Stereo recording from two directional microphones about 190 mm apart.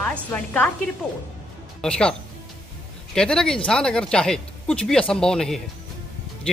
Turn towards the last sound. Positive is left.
turn(degrees=5)  # may be behind; listen again after turning